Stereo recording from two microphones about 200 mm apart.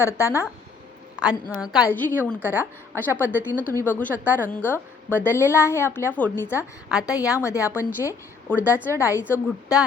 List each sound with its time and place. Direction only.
0.0 s a woman's voice: 15° left (ahead or behind)
2.4 s a woman's voice: 10° right (ahead or behind)
3.6 s a woman's voice: 10° left (ahead or behind)